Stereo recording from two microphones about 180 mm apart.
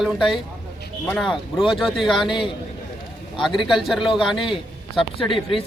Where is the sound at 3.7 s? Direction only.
Centre (ahead or behind).